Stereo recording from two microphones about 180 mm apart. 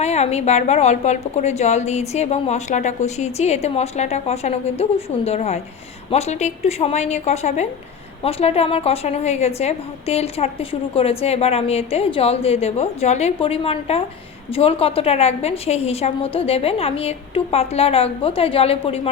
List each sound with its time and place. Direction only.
0.0 s a woman's voice: 40° left (ahead or behind)